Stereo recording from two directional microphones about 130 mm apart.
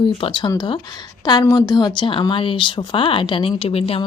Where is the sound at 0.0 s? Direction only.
40° left (ahead or behind).